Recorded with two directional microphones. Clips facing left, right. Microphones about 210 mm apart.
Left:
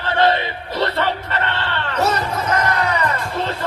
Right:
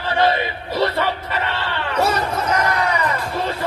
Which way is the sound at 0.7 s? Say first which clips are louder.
Right 1 dB; 10° right (ahead or behind).